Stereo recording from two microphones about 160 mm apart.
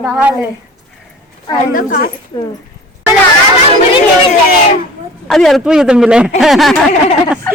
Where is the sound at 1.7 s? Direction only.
60° left (ahead or behind).